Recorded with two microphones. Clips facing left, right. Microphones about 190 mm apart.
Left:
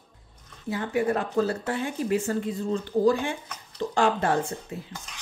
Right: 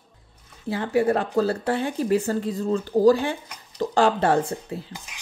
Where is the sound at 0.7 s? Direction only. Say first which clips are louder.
Right 4 dB; 30° right (ahead or behind).